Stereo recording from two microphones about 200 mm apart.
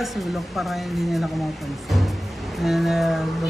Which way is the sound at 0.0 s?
Centre (ahead or behind).